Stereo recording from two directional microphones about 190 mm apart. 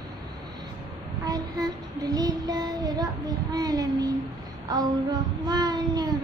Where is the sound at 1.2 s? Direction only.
20° right (ahead or behind).